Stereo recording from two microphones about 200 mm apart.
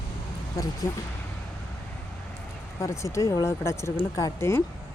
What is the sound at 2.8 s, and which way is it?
Speech, 15° left (ahead or behind).